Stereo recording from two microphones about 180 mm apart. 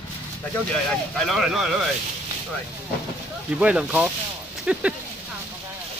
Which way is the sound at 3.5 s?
5° right (ahead or behind).